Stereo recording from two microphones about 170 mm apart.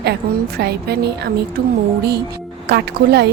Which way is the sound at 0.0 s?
75° right (ahead or behind).